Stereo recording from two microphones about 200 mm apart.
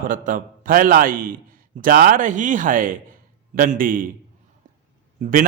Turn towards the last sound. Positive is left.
turn(degrees=-40)  # may be behind; listen again after turning